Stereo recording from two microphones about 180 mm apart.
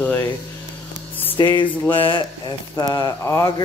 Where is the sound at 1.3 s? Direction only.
25° left (ahead or behind).